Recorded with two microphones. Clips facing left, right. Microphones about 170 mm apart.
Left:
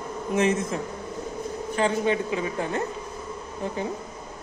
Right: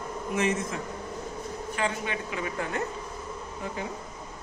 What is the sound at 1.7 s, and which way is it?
A woman's voice, 30° left (ahead or behind).